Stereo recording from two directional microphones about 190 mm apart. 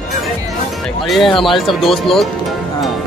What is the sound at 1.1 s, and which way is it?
Speech, centre (ahead or behind).